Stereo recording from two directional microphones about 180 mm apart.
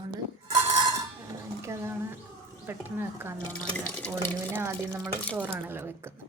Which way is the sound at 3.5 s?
10° left (ahead or behind).